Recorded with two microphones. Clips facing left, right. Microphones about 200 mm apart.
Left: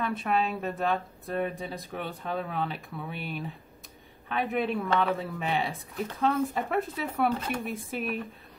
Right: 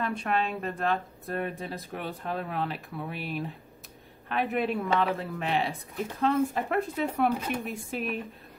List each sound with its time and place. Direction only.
0.0 s speech: centre (ahead or behind)